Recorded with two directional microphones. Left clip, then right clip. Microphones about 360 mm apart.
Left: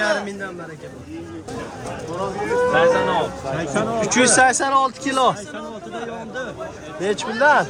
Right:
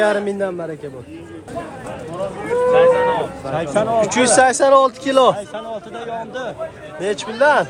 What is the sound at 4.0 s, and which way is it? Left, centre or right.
A man's voice, centre.